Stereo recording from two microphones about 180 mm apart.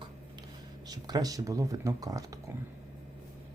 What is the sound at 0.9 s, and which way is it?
Speech, 20° right (ahead or behind).